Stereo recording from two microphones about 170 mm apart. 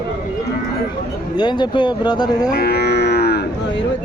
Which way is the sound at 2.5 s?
65° left (ahead or behind).